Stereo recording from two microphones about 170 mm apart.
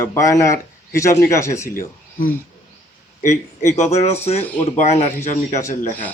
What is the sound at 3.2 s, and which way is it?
Speech, 45° left (ahead or behind).